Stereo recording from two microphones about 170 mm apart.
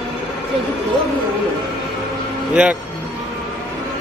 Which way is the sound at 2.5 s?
5° right (ahead or behind).